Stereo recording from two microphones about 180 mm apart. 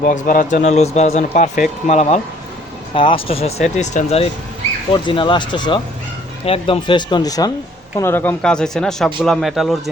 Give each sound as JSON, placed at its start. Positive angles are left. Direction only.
{"t": 0.0, "sound": "speech", "side_deg": 50}
{"t": 2.9, "sound": "speech", "side_deg": 30}
{"t": 5.0, "sound": "speech", "side_deg": 25}